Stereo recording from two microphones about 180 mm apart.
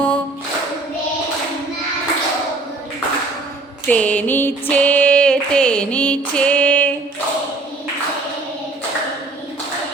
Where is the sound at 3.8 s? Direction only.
5° left (ahead or behind).